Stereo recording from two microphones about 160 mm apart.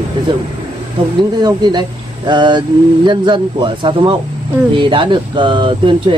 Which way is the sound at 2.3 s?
30° right (ahead or behind).